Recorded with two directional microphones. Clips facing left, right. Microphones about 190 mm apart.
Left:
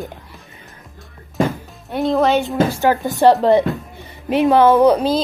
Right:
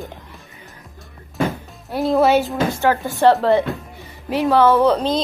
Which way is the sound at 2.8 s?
15° left (ahead or behind).